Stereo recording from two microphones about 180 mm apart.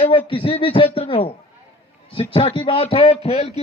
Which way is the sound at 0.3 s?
30° left (ahead or behind).